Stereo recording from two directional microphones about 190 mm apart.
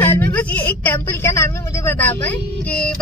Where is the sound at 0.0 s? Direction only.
10° left (ahead or behind).